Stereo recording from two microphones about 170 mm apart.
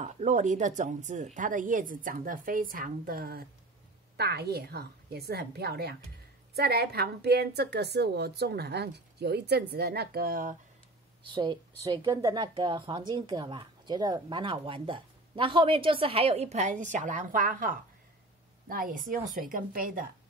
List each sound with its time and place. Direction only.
0.0 s a woman's voice: 45° right (ahead or behind)
11.2 s a woman's voice: 25° right (ahead or behind); by 20.1 s 55° right (ahead or behind)